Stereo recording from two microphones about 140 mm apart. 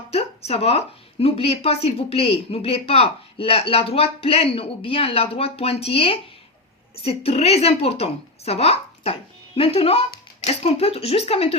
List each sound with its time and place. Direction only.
0.1 s speech: 45° left (ahead or behind)